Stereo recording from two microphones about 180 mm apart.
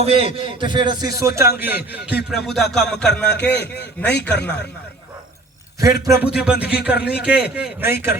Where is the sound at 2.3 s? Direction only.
Centre (ahead or behind).